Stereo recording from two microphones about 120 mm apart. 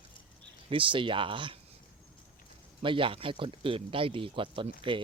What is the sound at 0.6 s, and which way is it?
Speech, 45° right (ahead or behind).